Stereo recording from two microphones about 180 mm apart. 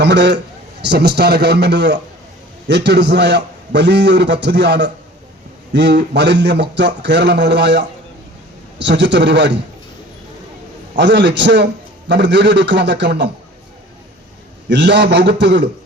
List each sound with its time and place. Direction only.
0.0 s a man's voice: 75° right (ahead or behind)
10.9 s a man's voice: 80° right
14.7 s a man's voice: 75° right (ahead or behind)